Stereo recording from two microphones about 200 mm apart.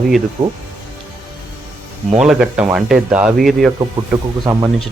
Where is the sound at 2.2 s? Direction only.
5° right (ahead or behind).